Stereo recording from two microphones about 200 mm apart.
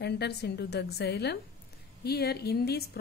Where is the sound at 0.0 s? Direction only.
55° left (ahead or behind).